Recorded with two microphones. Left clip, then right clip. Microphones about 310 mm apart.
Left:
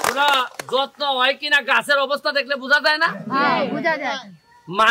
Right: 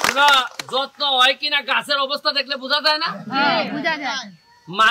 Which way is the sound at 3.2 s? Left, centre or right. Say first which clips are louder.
Right 4 dB; centre.